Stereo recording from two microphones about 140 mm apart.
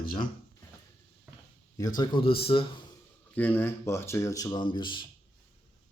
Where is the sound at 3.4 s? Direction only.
15° left (ahead or behind); by 5.1 s 35° left (ahead or behind).